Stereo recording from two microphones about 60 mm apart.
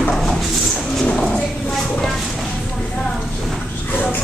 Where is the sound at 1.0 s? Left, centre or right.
Centre.